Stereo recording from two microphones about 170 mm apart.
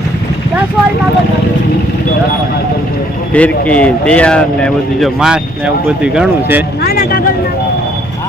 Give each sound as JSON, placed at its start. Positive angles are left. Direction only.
{"t": 3.3, "sound": "speech", "side_deg": 10}
{"t": 6.8, "sound": "speech", "side_deg": 60}